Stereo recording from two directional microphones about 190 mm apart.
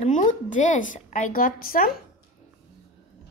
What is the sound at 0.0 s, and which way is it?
A woman's voice, 40° left (ahead or behind).